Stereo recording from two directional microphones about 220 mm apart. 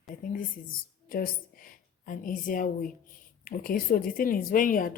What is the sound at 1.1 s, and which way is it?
A woman's voice, 40° left (ahead or behind).